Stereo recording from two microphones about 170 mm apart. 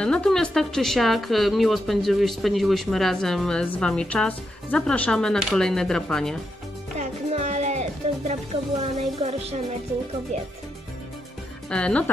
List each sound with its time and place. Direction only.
0.0 s speech: 5° left (ahead or behind)
7.0 s music: 40° right (ahead or behind)
8.3 s speech: 40° right (ahead or behind)
11.7 s speech: 5° left (ahead or behind)